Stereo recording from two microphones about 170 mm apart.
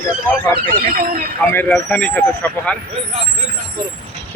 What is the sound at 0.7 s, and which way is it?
Speech, 60° right (ahead or behind).